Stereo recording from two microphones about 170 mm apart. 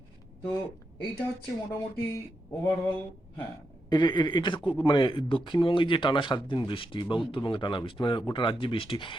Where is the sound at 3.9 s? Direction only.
25° left (ahead or behind).